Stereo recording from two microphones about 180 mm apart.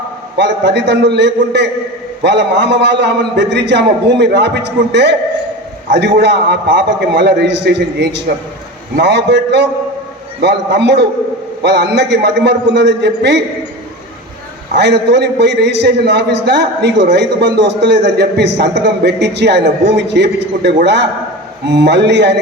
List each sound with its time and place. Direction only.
0.3 s a man's voice: 75° right (ahead or behind)
14.8 s a man's voice: 70° right (ahead or behind)